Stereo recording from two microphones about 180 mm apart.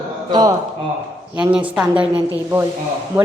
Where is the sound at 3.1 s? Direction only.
20° right (ahead or behind).